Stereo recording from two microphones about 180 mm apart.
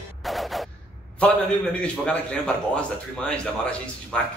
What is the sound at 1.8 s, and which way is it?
A man's voice, 5° left (ahead or behind).